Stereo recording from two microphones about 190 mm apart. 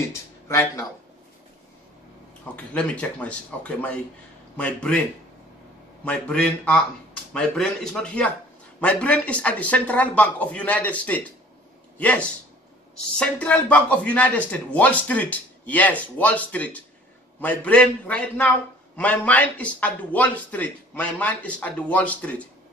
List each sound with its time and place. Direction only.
0.1 s speech: 15° left (ahead or behind)
2.4 s speech: 5° left (ahead or behind)
6.0 s speech: 5° left (ahead or behind)